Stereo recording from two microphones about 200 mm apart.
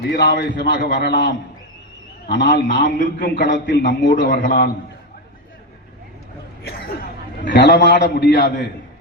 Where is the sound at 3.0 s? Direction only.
45° left (ahead or behind).